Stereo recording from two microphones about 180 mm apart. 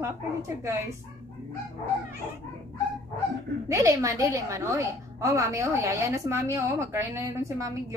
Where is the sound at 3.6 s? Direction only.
15° right (ahead or behind).